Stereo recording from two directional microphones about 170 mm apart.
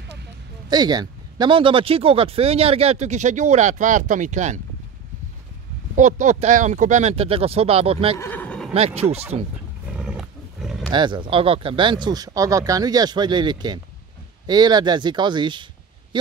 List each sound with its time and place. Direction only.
0.7 s speech: 25° right (ahead or behind); by 4.6 s 45° right (ahead or behind)
5.9 s speech: 45° right (ahead or behind)
8.2 s a sound: 10° left (ahead or behind)
8.7 s speech: 40° right (ahead or behind)
9.8 s roaring cats: 5° right (ahead or behind)
10.9 s speech: 25° right (ahead or behind)